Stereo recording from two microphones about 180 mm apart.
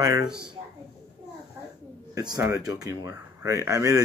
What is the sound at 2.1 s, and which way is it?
A man's voice, 20° right (ahead or behind).